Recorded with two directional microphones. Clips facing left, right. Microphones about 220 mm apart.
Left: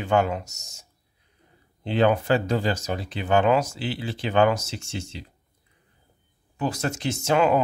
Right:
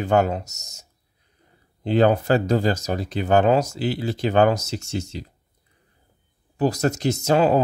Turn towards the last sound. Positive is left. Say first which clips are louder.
# right 3 dB
turn(degrees=-35)  # may be behind; listen again after turning